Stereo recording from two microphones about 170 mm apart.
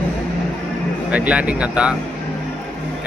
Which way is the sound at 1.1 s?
10° right (ahead or behind).